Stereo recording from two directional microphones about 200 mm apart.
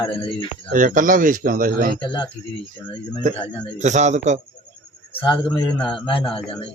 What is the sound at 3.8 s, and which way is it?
Speech, 35° right (ahead or behind).